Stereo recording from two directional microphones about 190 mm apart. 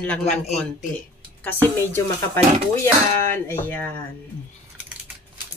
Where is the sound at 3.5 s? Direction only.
10° left (ahead or behind).